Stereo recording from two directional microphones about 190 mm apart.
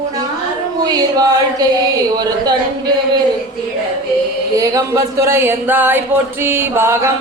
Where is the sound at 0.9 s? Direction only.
20° right (ahead or behind).